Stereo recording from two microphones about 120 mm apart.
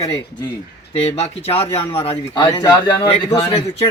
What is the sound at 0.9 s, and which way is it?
Speech, 55° left (ahead or behind).